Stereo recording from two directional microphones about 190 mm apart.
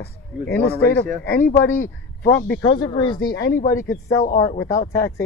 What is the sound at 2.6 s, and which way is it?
Speech, 25° left (ahead or behind).